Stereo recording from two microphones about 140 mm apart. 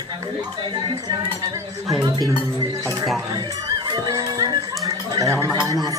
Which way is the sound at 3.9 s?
30° right (ahead or behind).